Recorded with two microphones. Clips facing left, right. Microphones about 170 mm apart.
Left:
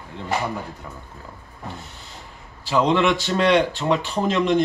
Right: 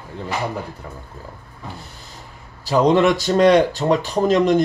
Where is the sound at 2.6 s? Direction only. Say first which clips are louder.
Right 4 dB; 40° right (ahead or behind).